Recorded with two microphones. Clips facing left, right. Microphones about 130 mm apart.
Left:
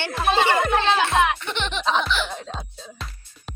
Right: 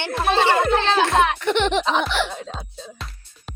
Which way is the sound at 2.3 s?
Centre (ahead or behind).